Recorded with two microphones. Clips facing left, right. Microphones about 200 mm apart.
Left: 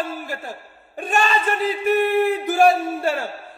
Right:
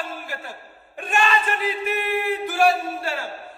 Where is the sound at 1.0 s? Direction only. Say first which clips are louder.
Left 2 dB; 40° left (ahead or behind).